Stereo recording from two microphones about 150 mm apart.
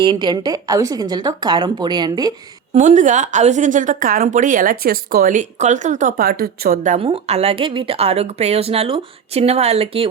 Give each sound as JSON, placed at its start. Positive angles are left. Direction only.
{"t": 0.0, "sound": "a woman's voice", "side_deg": -30}
{"t": 2.7, "sound": "a woman's voice", "side_deg": -55}
{"t": 6.9, "sound": "a woman's voice", "side_deg": -40}